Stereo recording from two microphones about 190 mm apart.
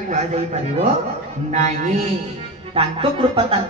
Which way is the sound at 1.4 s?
40° right (ahead or behind).